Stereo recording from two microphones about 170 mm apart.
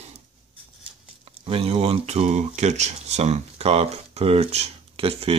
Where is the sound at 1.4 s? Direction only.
35° right (ahead or behind).